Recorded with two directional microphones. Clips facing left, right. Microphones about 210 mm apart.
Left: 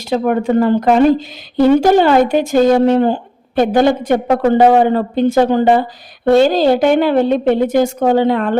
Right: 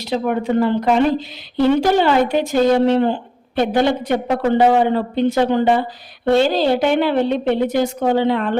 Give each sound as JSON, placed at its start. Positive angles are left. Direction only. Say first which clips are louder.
{"t": 0.0, "sound": "speech", "louder": "left 4 dB", "side_deg": 50}